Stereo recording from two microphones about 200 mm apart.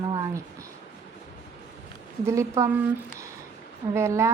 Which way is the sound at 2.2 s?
15° right (ahead or behind).